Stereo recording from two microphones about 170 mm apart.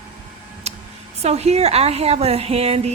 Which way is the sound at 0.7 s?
40° right (ahead or behind).